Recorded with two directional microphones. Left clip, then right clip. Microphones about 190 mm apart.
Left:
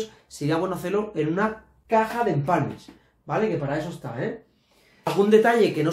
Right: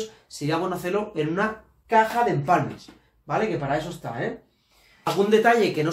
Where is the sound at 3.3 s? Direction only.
20° left (ahead or behind).